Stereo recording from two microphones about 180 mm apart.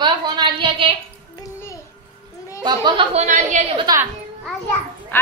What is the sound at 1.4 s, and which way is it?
Music, 15° left (ahead or behind).